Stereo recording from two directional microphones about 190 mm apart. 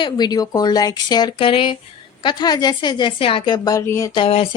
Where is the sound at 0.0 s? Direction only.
20° left (ahead or behind).